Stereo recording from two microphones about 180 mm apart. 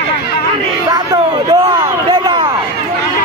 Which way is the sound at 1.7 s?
25° right (ahead or behind).